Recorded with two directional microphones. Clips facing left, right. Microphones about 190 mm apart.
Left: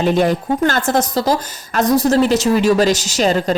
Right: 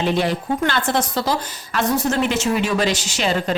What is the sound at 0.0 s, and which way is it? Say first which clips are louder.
A woman's voice: left 5 dB; 45° left (ahead or behind).